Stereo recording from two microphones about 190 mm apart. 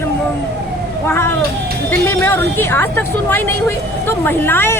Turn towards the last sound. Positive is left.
turn(degrees=10)  # may be behind; listen again after turning